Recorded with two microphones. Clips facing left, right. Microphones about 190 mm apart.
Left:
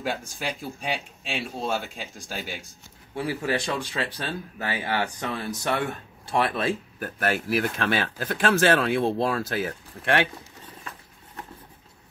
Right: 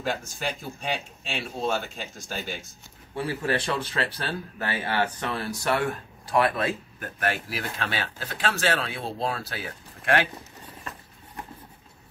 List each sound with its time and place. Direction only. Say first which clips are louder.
0.0 s speech: even; 10° left (ahead or behind); by 7.1 s 30° left (ahead or behind)
7.4 s speech: left 7 dB; 50° left (ahead or behind)